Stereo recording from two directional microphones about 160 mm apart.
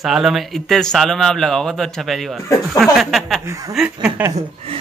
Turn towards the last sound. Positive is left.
turn(degrees=-5)  # may be behind; listen again after turning